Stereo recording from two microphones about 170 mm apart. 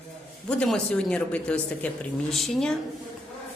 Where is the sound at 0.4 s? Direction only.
5° left (ahead or behind).